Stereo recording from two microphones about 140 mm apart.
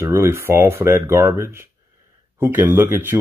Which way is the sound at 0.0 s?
20° right (ahead or behind).